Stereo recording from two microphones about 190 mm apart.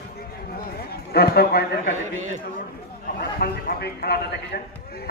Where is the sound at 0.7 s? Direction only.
55° left (ahead or behind).